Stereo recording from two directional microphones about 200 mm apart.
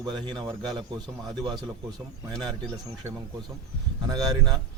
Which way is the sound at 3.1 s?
15° right (ahead or behind).